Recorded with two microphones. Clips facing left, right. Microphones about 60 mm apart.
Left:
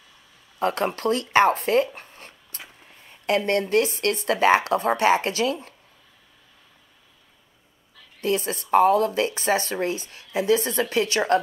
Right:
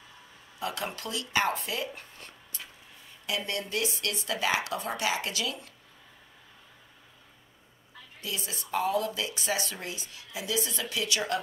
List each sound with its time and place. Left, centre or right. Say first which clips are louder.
0.6 s speech: left 10 dB; left
2.0 s a sound: left 4 dB; left
3.1 s speech: left 11 dB; left
8.2 s speech: left 13 dB; left